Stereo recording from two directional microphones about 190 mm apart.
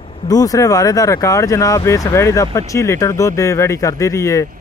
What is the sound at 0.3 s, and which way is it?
Speech, 20° left (ahead or behind).